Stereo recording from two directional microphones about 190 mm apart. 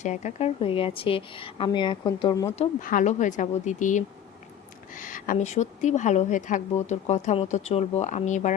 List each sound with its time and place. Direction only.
0.0 s a woman's voice: 40° left (ahead or behind); by 2.5 s 20° left (ahead or behind)
2.6 s a woman's voice: 40° left (ahead or behind)